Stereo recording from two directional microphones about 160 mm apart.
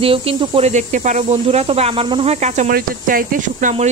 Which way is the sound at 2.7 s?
60° right (ahead or behind).